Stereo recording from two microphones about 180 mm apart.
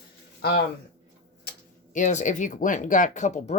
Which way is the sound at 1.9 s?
45° left (ahead or behind).